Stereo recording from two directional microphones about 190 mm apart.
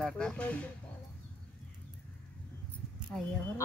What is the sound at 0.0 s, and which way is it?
Speech, 5° left (ahead or behind).